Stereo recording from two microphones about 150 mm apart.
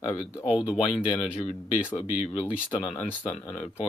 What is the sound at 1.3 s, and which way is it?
Speech, 40° left (ahead or behind).